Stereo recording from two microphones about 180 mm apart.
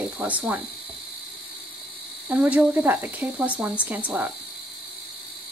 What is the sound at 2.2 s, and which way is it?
Speech, 10° right (ahead or behind).